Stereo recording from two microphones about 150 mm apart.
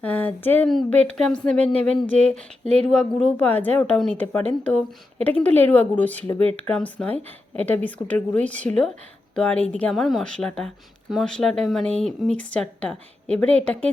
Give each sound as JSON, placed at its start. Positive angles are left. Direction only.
{"t": 0.0, "sound": "a woman's voice", "side_deg": 10}
{"t": 2.6, "sound": "speech", "side_deg": -45}
{"t": 2.9, "sound": "a woman's voice", "side_deg": 5}